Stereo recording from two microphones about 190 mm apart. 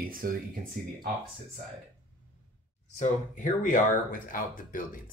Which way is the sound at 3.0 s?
40° left (ahead or behind).